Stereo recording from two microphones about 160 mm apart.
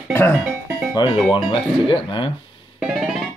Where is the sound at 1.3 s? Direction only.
30° left (ahead or behind).